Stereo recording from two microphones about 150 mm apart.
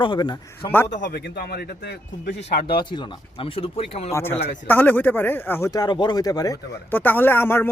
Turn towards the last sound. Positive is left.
turn(degrees=15)  # may be behind; listen again after turning